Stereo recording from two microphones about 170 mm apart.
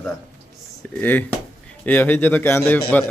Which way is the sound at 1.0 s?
10° left (ahead or behind).